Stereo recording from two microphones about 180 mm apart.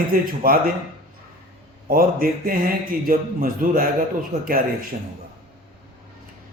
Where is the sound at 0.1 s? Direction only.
55° right (ahead or behind).